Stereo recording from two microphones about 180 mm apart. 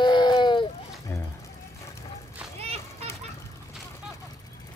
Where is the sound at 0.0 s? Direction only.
25° left (ahead or behind).